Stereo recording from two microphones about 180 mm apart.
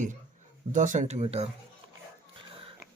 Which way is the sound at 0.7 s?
45° right (ahead or behind).